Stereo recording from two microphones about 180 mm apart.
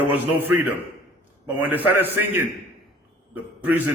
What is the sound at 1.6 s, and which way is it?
Speech, 10° right (ahead or behind).